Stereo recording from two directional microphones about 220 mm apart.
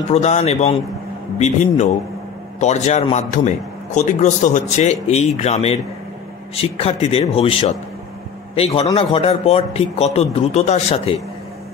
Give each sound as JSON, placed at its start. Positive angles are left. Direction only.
{"t": 0.1, "sound": "a man's voice", "side_deg": 30}